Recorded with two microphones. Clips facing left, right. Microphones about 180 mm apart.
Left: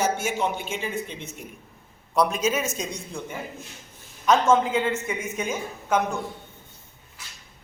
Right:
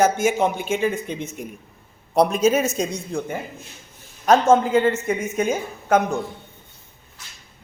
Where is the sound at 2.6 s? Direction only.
60° right (ahead or behind).